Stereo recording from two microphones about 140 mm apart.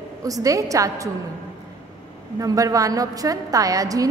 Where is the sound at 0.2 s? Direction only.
25° right (ahead or behind).